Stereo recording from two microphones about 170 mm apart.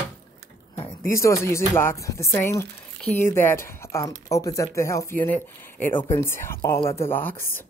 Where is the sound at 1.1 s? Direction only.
15° left (ahead or behind).